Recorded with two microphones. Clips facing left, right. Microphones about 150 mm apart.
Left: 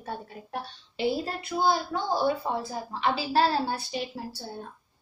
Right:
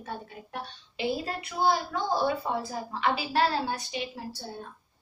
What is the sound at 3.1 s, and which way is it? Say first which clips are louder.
Speech: left 3 dB; 30° left (ahead or behind).